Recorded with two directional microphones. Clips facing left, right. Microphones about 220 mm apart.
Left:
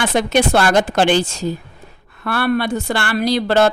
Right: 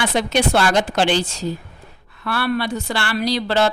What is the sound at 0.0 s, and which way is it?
A woman's voice, 50° left (ahead or behind).